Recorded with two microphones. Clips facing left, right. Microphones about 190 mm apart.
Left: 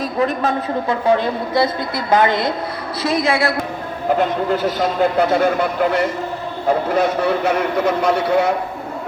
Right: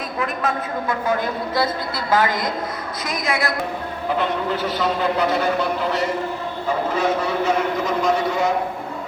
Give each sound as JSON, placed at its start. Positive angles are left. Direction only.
{"t": 0.2, "sound": "a woman's voice", "side_deg": 35}
{"t": 4.2, "sound": "a man's voice", "side_deg": 45}